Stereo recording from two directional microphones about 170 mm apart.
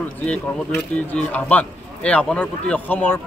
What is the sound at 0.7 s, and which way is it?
Speech, 5° left (ahead or behind).